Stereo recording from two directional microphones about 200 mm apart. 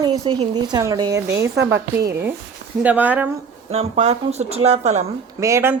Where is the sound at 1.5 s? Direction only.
60° right (ahead or behind).